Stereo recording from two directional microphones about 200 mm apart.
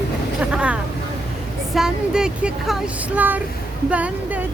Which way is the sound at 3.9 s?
5° right (ahead or behind).